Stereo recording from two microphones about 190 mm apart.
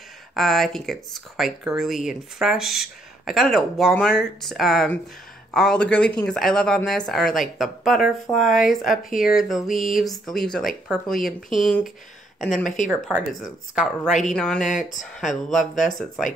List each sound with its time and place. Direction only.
0.3 s speech: centre (ahead or behind)
12.6 s speech: 40° left (ahead or behind)
14.2 s speech: 5° left (ahead or behind)
14.8 s speech: 40° left (ahead or behind)
15.1 s speech: centre (ahead or behind)